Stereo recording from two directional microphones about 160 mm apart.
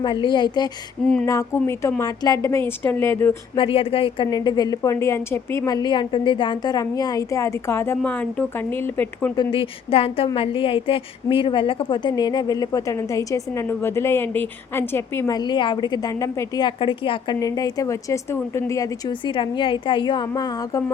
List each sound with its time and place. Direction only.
0.0 s a woman's voice: 30° left (ahead or behind); by 3.3 s 15° left (ahead or behind)
3.5 s a woman's voice: 35° left (ahead or behind); by 9.3 s 10° left (ahead or behind)
9.3 s a woman's voice: 30° left (ahead or behind)
15.4 s a woman's voice: 30° left (ahead or behind)